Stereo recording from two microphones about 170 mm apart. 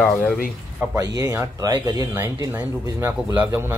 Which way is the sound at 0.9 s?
20° right (ahead or behind).